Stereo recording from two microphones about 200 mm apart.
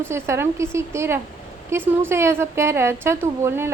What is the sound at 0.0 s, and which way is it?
A woman's voice, 10° right (ahead or behind).